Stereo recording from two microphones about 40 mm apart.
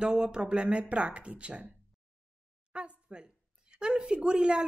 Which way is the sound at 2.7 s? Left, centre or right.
Right.